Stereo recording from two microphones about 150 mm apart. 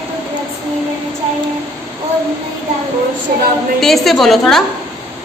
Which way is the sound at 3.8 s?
Centre (ahead or behind).